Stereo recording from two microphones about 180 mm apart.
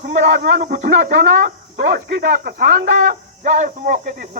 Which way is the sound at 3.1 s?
45° right (ahead or behind).